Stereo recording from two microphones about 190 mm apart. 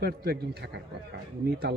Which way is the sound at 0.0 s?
55° right (ahead or behind).